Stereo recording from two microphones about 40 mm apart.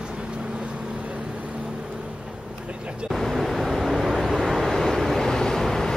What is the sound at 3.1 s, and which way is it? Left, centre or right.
Vehicle, centre.